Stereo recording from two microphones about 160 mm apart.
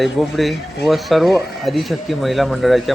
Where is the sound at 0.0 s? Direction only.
Centre (ahead or behind).